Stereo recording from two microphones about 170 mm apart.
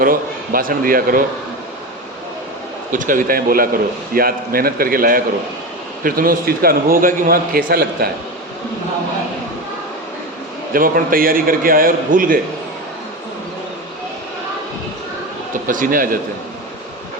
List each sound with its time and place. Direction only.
0.0 s a man's voice: 55° right (ahead or behind)
2.9 s a man's voice: 50° right (ahead or behind)
10.8 s a man's voice: 55° right (ahead or behind)
15.6 s a man's voice: 55° right (ahead or behind)